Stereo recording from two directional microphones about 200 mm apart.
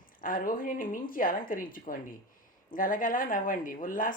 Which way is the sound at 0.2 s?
45° left (ahead or behind).